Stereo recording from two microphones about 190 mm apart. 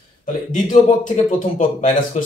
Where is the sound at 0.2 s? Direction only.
45° left (ahead or behind).